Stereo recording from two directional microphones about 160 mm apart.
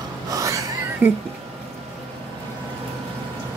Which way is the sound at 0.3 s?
20° right (ahead or behind).